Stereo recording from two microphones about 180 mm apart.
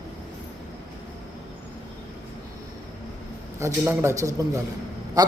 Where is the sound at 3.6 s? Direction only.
15° right (ahead or behind).